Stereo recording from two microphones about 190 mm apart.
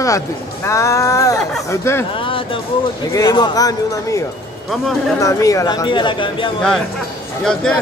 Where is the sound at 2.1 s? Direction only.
25° left (ahead or behind).